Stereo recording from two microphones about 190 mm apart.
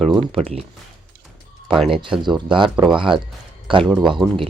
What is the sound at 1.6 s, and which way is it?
Speech, centre (ahead or behind).